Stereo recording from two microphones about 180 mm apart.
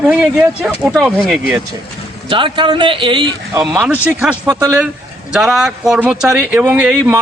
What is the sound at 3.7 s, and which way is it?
Speech, 5° right (ahead or behind).